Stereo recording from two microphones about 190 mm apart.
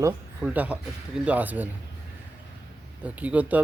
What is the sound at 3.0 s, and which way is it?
Speech, 5° right (ahead or behind).